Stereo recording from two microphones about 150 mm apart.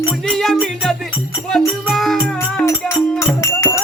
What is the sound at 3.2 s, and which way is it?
Music, 20° left (ahead or behind).